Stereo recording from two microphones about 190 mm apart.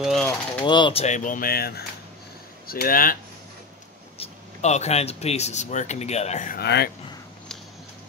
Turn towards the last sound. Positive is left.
turn(degrees=60)  # may be behind; listen again after turning